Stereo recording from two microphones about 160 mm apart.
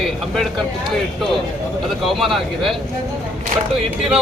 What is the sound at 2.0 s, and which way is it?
Speech, centre (ahead or behind).